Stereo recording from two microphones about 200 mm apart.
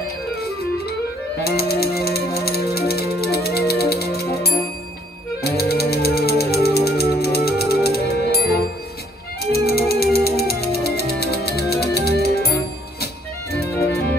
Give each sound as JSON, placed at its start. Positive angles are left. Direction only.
{"t": 1.4, "sound": "music", "side_deg": 50}